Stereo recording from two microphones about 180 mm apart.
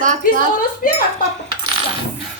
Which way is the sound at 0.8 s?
50° left (ahead or behind).